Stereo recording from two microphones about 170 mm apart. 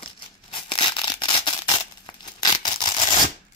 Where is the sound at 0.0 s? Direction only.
30° left (ahead or behind).